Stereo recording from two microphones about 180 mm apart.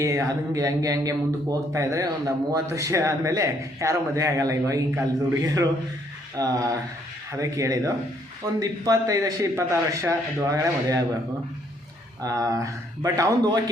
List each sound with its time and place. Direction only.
0.0 s a man's voice: 15° right (ahead or behind)
12.2 s a man's voice: 20° right (ahead or behind)